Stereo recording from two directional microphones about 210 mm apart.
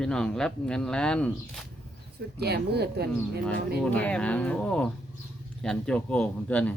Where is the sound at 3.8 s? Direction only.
5° left (ahead or behind).